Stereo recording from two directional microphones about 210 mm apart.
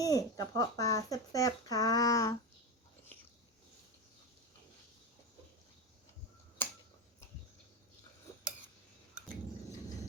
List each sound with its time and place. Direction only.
0.0 s speech: 15° left (ahead or behind)